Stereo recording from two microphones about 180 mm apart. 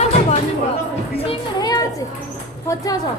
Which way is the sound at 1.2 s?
30° left (ahead or behind).